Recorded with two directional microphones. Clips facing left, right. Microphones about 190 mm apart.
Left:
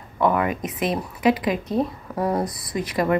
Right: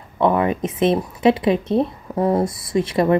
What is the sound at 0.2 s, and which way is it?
Speech, 25° right (ahead or behind).